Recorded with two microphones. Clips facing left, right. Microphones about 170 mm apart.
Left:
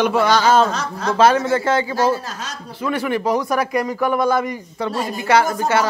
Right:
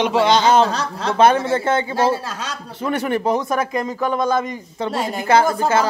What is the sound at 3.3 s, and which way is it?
A man's voice, 25° right (ahead or behind).